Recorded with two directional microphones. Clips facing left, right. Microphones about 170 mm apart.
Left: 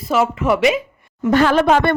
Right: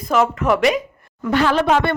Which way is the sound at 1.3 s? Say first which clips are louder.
Left 3 dB; 50° left (ahead or behind).